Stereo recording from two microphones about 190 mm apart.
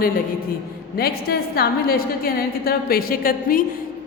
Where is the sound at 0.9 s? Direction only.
55° left (ahead or behind).